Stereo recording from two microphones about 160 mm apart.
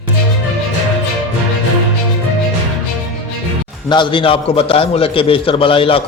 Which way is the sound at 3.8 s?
30° left (ahead or behind).